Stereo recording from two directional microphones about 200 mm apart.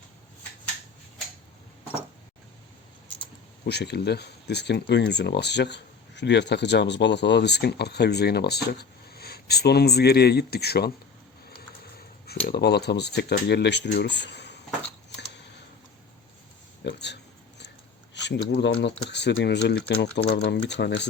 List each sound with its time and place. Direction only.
3.7 s speech: 55° left (ahead or behind)
16.8 s a sound: 60° left (ahead or behind)
18.1 s speech: 60° left (ahead or behind)